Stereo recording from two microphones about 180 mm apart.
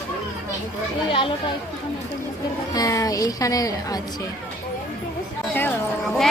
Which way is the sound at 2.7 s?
20° left (ahead or behind).